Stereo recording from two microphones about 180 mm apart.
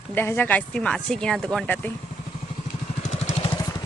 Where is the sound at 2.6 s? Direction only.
40° left (ahead or behind).